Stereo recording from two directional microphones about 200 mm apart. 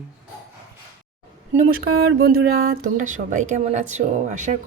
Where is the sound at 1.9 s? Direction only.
50° right (ahead or behind).